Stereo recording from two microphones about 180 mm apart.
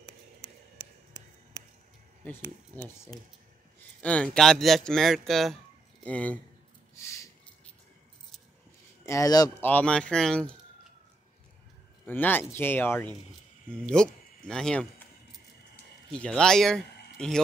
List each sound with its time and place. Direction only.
0.0 s a sound: 30° left (ahead or behind)
2.2 s speech: 10° left (ahead or behind)
4.0 s speech: 5° left (ahead or behind)
7.0 s a sound: 15° left (ahead or behind)
9.0 s speech: 15° left (ahead or behind)
9.7 s speech: 5° left (ahead or behind)
12.1 s speech: 10° left (ahead or behind)
16.1 s speech: 5° left (ahead or behind)